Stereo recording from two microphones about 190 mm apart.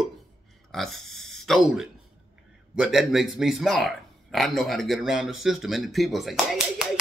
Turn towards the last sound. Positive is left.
turn(degrees=0)  # may be behind; listen again after turning